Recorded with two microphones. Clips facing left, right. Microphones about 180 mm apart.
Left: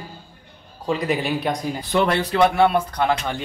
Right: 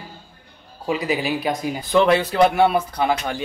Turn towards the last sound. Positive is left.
turn(degrees=-10)  # may be behind; listen again after turning